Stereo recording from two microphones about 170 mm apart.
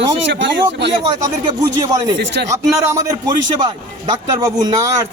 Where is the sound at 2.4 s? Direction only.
75° right (ahead or behind).